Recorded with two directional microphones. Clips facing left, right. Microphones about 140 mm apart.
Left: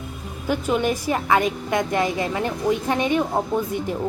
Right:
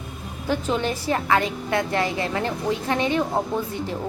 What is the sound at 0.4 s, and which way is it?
A woman's voice, 10° left (ahead or behind).